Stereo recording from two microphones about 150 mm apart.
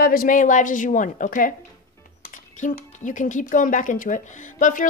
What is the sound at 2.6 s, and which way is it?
A woman's voice, 55° left (ahead or behind).